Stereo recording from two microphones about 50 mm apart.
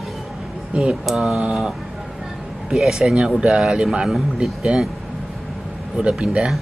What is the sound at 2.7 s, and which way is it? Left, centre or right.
Speech, centre.